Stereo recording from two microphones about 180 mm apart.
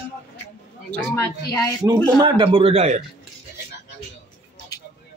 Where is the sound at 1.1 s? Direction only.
20° left (ahead or behind).